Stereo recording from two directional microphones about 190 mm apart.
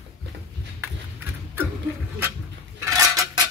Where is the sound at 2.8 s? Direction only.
15° right (ahead or behind).